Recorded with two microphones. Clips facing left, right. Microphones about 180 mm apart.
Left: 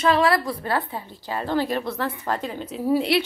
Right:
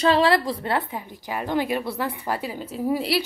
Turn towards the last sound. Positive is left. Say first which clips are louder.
# left 3 dB
turn(degrees=-5)  # may be behind; listen again after turning